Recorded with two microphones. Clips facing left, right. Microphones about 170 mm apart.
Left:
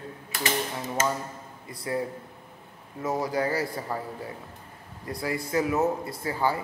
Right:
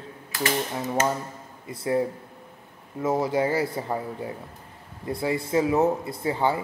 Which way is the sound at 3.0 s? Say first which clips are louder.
Right 4 dB; 25° right (ahead or behind).